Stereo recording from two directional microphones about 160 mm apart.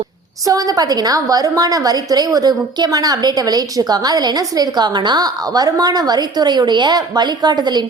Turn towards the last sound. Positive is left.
turn(degrees=-25)  # may be behind; listen again after turning